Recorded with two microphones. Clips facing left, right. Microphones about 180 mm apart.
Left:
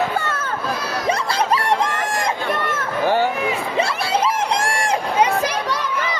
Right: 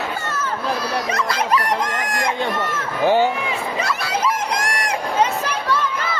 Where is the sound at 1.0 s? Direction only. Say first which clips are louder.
Left 2 dB; 30° left (ahead or behind).